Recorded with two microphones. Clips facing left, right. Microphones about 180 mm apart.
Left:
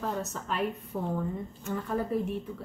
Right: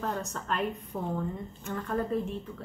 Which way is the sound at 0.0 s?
5° left (ahead or behind).